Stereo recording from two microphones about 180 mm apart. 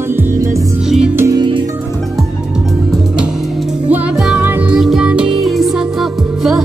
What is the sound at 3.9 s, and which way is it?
Music, 5° right (ahead or behind).